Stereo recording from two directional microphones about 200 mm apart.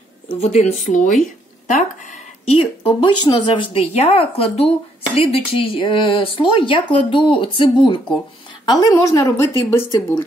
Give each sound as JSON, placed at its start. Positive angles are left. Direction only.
{"t": 0.3, "sound": "a woman's voice", "side_deg": 35}